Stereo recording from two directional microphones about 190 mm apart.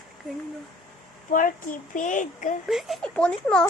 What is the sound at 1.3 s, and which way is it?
Speech, 45° left (ahead or behind).